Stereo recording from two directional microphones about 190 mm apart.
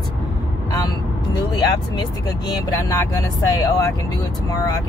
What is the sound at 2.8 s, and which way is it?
Speech, 15° left (ahead or behind).